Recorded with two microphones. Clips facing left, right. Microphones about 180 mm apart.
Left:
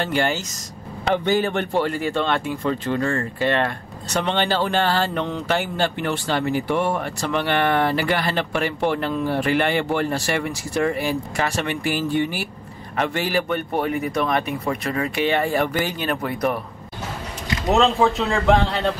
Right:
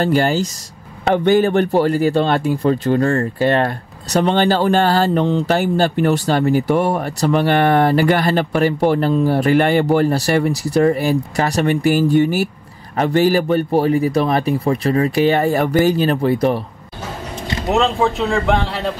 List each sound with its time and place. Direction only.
0.0 s speech: 40° right (ahead or behind)
1.1 s a man's voice: 55° right (ahead or behind)
1.5 s speech: 40° right (ahead or behind)
17.6 s a man's voice: centre (ahead or behind)